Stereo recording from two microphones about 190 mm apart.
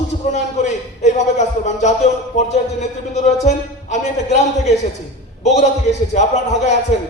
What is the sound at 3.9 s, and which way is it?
Speech, 35° left (ahead or behind).